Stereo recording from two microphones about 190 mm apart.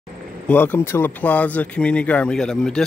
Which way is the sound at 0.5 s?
10° left (ahead or behind).